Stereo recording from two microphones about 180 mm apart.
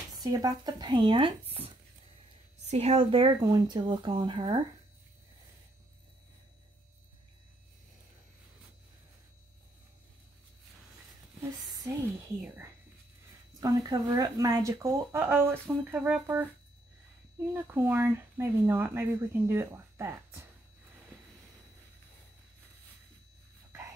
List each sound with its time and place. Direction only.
0.2 s speech: 20° right (ahead or behind)
2.7 s speech: 35° right (ahead or behind)
11.9 s speech: 15° right (ahead or behind)
17.5 s speech: 10° right (ahead or behind)